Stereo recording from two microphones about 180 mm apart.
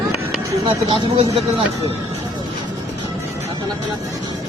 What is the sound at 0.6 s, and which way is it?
Speech, 30° right (ahead or behind).